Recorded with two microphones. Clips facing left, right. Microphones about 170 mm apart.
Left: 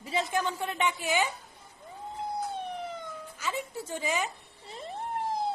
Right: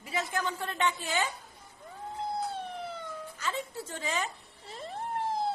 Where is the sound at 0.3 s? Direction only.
15° left (ahead or behind).